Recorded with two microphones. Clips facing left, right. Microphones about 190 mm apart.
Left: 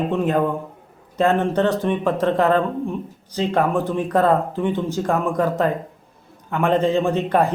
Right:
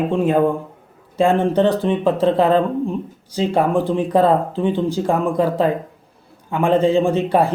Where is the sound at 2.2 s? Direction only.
10° right (ahead or behind).